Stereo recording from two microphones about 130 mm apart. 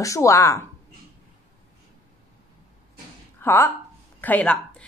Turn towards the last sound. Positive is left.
turn(degrees=10)  # may be behind; listen again after turning